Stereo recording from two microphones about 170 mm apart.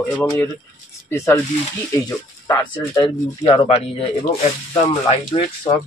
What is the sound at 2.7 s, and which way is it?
Speech, 25° left (ahead or behind).